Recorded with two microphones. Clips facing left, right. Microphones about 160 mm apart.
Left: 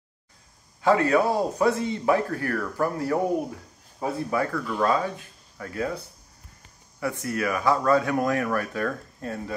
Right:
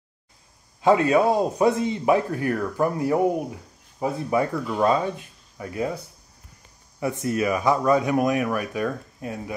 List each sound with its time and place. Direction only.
0.8 s speech: 20° right (ahead or behind)
7.0 s speech: 20° right (ahead or behind)